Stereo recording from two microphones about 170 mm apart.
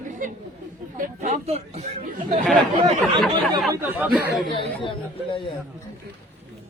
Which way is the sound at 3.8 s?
10° right (ahead or behind).